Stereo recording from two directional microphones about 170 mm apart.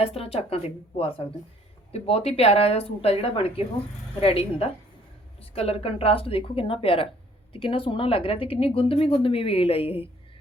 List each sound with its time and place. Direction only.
0.0 s speech: 35° left (ahead or behind)